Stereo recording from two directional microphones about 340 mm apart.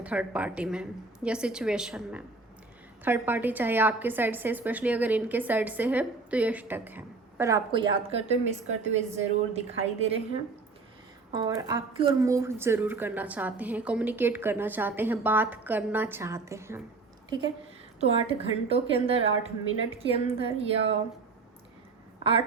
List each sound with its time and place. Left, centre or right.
0.0 s a woman's voice: centre
11.3 s a woman's voice: centre
18.0 s a woman's voice: centre
22.2 s speech: centre